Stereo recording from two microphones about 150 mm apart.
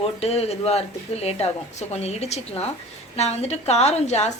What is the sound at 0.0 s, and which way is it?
A woman's voice, 40° left (ahead or behind).